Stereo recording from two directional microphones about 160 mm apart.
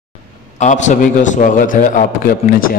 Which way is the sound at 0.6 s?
50° left (ahead or behind).